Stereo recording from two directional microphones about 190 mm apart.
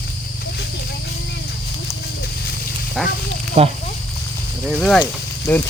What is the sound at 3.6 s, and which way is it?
Speech, 30° right (ahead or behind).